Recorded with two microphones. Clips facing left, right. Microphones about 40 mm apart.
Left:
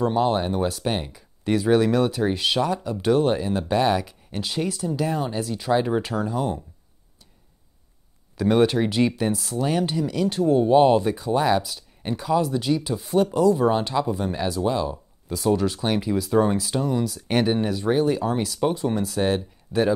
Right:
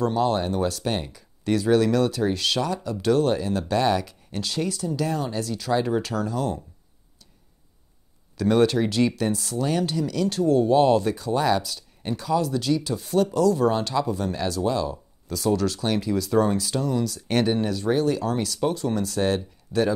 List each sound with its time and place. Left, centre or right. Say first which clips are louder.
0.0 s speech: left 1 dB; centre
8.4 s speech: left 1 dB; centre